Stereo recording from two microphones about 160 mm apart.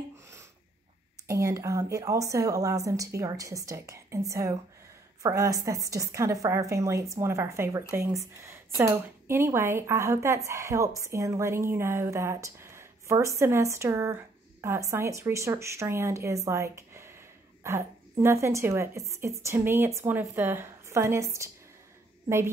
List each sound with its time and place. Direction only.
1.2 s speech: 20° right (ahead or behind)